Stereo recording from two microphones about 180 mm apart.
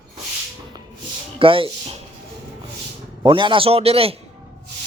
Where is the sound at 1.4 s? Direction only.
30° right (ahead or behind).